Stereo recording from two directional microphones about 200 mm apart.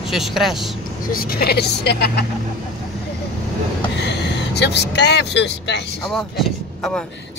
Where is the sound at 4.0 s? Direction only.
60° left (ahead or behind).